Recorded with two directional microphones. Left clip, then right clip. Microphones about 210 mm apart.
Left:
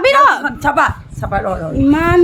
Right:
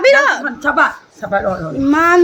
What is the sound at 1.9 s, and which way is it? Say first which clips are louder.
Speech: right 2 dB; 15° left (ahead or behind).